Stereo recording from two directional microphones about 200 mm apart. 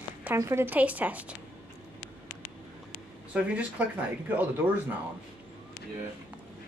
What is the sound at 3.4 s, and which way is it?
Speech, 5° right (ahead or behind).